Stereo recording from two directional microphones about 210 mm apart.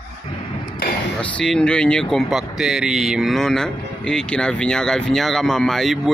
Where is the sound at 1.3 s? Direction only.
5° left (ahead or behind).